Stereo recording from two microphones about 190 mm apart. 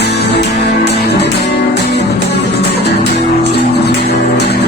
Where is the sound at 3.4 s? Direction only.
60° left (ahead or behind).